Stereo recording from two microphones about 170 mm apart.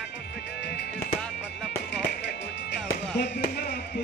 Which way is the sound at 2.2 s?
90° left.